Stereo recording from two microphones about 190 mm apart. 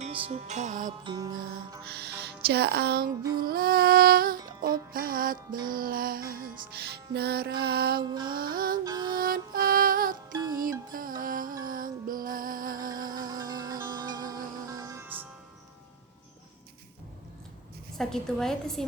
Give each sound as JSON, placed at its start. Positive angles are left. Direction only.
{"t": 0.0, "sound": "music", "side_deg": -30}
{"t": 1.0, "sound": "music", "side_deg": -20}
{"t": 1.8, "sound": "speech", "side_deg": -60}
{"t": 3.4, "sound": "music", "side_deg": -50}
{"t": 8.7, "sound": "music", "side_deg": -20}
{"t": 9.1, "sound": "music", "side_deg": -50}
{"t": 10.3, "sound": "music", "side_deg": -20}
{"t": 10.6, "sound": "music", "side_deg": -45}
{"t": 13.1, "sound": "music", "side_deg": -20}
{"t": 17.9, "sound": "a woman's voice", "side_deg": 0}